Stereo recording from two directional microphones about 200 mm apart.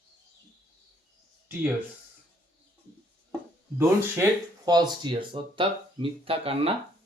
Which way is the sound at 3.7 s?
15° right (ahead or behind).